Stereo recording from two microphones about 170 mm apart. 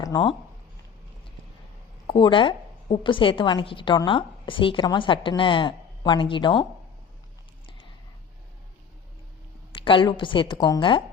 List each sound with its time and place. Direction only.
0.0 s speech: 25° left (ahead or behind)
2.0 s a woman's voice: 30° left (ahead or behind)
9.8 s a woman's voice: 30° left (ahead or behind)